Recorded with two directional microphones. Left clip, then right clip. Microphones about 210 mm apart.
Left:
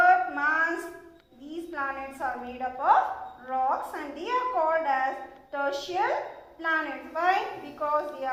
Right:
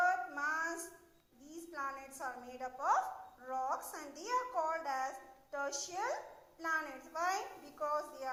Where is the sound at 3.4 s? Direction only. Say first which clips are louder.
Left 11 dB; 45° right (ahead or behind).